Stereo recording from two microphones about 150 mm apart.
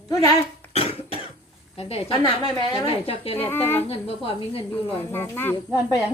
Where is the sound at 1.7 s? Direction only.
40° left (ahead or behind).